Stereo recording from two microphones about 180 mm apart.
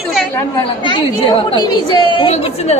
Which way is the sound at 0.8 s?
25° left (ahead or behind).